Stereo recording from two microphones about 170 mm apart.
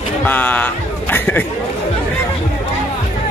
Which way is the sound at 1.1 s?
10° left (ahead or behind).